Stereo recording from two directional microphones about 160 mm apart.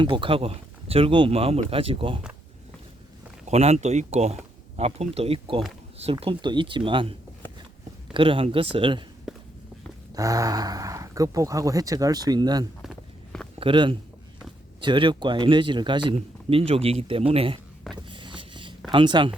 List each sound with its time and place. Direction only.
0.0 s a man's voice: 30° right (ahead or behind)
3.4 s a man's voice: 40° right (ahead or behind)
9.3 s walk: 5° right (ahead or behind)
10.2 s speech: 20° right (ahead or behind)
12.8 s walk: centre (ahead or behind)
13.6 s a man's voice: 30° right (ahead or behind)
17.9 s vehicle: 30° right (ahead or behind)
18.9 s speech: 30° right (ahead or behind)